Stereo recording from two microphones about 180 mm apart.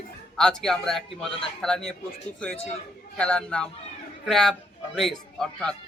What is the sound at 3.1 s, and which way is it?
A man's voice, 5° left (ahead or behind).